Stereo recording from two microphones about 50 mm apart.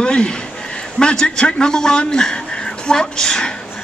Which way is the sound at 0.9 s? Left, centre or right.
Centre.